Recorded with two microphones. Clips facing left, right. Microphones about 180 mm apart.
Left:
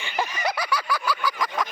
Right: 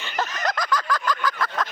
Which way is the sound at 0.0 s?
10° left (ahead or behind).